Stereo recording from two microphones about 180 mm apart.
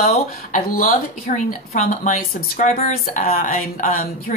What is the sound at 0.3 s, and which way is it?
A woman's voice, 50° left (ahead or behind).